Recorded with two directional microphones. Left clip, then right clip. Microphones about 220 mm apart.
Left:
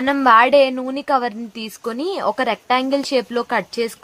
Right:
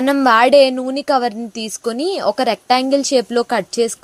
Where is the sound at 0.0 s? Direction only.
20° right (ahead or behind).